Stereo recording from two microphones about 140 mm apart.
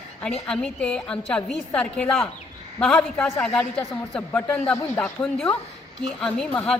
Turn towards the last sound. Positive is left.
turn(degrees=5)  # may be behind; listen again after turning